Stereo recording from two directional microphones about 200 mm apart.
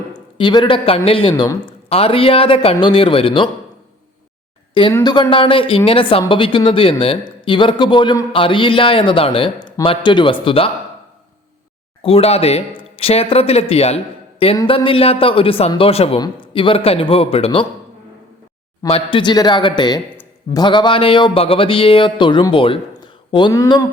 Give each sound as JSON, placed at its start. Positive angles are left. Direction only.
{"t": 0.1, "sound": "a man's voice", "side_deg": 20}
{"t": 4.7, "sound": "speech", "side_deg": 25}
{"t": 12.0, "sound": "a man's voice", "side_deg": 30}
{"t": 14.5, "sound": "speech", "side_deg": 15}
{"t": 18.9, "sound": "speech", "side_deg": 25}